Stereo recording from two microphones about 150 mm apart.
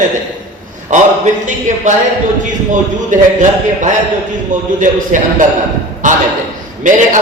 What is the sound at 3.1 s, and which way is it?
Speech, 55° right (ahead or behind).